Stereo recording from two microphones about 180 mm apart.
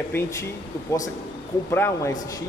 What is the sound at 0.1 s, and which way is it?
Speech, 15° left (ahead or behind).